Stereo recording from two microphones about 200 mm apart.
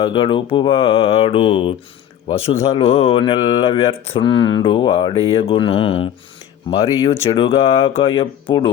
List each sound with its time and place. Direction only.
0.0 s speech: 25° left (ahead or behind)